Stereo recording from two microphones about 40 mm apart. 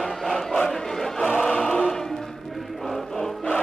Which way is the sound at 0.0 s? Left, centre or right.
Centre.